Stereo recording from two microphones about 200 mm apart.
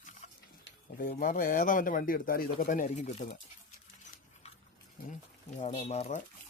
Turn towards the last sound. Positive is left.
turn(degrees=35)  # may be behind; listen again after turning